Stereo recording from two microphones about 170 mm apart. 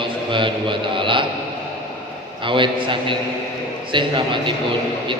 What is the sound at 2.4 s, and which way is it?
A man's voice, 30° right (ahead or behind).